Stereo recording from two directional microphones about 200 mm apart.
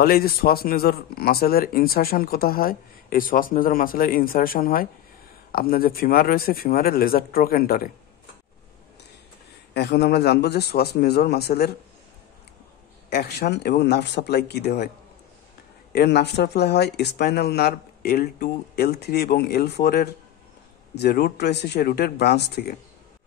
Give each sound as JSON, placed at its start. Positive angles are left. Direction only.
{"t": 0.0, "sound": "speech", "side_deg": 50}
{"t": 9.8, "sound": "speech", "side_deg": 55}
{"t": 13.1, "sound": "speech", "side_deg": 55}
{"t": 15.9, "sound": "speech", "side_deg": 55}